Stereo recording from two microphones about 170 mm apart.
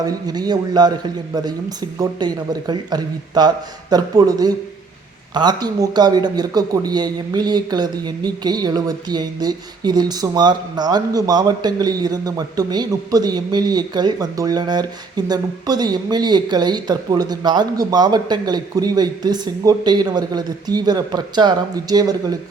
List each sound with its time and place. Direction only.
0.0 s a man's voice: 25° right (ahead or behind)
2.0 s a man's voice: 25° right (ahead or behind)